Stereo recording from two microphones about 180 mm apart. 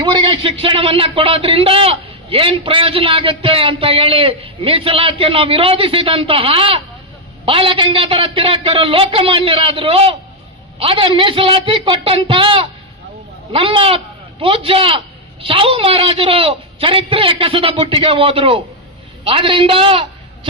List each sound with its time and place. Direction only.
0.0 s a man's voice: 25° right (ahead or behind)